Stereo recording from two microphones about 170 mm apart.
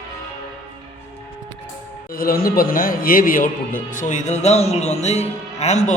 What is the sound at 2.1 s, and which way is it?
A man's voice, 60° left (ahead or behind).